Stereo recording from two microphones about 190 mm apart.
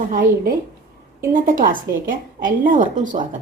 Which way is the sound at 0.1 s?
45° right (ahead or behind).